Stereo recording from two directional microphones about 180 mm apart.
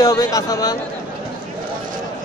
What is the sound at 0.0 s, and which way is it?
Speech, 20° left (ahead or behind).